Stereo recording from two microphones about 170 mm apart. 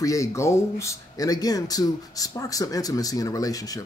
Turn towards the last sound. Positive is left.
turn(degrees=20)  # may be behind; listen again after turning